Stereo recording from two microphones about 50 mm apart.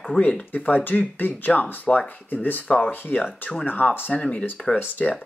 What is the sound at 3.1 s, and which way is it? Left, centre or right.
Speech, left.